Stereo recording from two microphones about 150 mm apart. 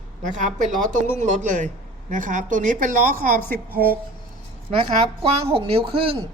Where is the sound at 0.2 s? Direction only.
55° right (ahead or behind).